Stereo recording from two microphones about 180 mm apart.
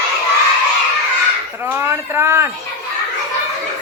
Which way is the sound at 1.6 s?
10° right (ahead or behind).